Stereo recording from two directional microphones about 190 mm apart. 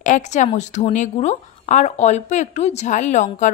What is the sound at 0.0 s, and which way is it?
A woman's voice, 40° left (ahead or behind).